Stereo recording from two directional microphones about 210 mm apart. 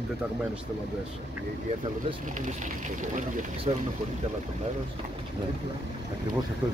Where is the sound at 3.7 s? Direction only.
30° right (ahead or behind).